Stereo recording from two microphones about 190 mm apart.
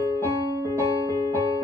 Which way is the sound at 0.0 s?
15° right (ahead or behind).